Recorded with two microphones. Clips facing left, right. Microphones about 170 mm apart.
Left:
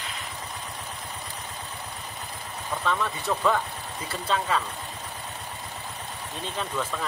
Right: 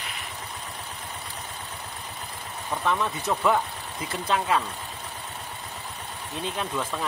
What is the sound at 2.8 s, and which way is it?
Speech, 20° right (ahead or behind).